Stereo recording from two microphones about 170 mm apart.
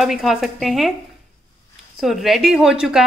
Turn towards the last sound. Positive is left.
turn(degrees=-5)  # may be behind; listen again after turning